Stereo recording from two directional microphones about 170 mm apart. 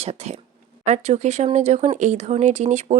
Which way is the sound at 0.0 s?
35° right (ahead or behind).